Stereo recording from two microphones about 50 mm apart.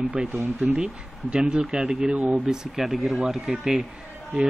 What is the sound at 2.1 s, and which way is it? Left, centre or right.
Speech, right.